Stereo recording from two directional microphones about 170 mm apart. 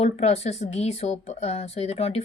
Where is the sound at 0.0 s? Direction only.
40° left (ahead or behind).